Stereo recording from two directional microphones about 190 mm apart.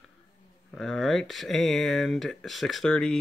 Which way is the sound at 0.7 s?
Centre (ahead or behind).